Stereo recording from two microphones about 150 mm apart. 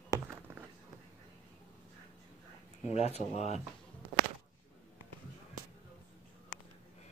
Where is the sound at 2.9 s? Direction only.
45° left (ahead or behind).